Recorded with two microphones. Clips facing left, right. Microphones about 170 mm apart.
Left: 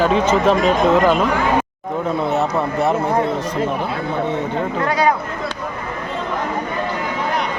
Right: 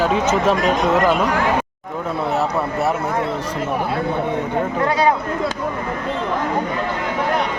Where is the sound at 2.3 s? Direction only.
Centre (ahead or behind).